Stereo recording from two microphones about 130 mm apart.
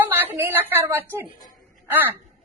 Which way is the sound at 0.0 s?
15° right (ahead or behind).